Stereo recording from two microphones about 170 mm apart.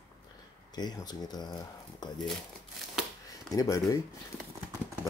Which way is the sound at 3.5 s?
20° left (ahead or behind).